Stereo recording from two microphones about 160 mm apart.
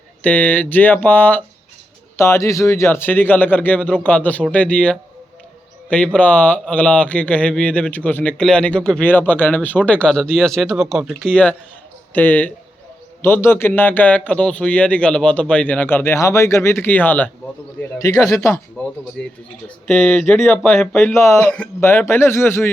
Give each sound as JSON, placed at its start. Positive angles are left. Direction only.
{"t": 0.2, "sound": "speech", "side_deg": 10}
{"t": 6.1, "sound": "speech", "side_deg": 10}
{"t": 17.9, "sound": "a man's voice", "side_deg": 20}
{"t": 19.2, "sound": "speech", "side_deg": 5}